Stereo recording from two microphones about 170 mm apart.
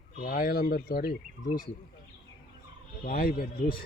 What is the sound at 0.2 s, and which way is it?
Speech, 60° left (ahead or behind).